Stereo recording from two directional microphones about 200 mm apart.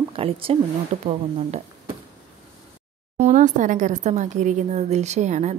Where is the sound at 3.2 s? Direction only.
35° right (ahead or behind).